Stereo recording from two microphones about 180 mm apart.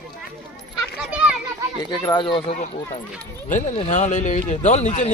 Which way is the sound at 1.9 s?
25° left (ahead or behind).